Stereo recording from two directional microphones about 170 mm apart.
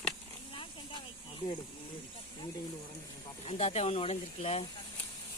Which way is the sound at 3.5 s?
35° left (ahead or behind).